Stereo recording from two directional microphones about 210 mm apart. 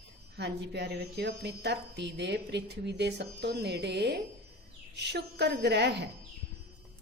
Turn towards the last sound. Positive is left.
turn(degrees=-55)  # may be behind; listen again after turning